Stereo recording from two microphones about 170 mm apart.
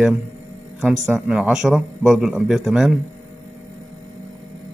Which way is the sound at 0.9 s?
20° right (ahead or behind).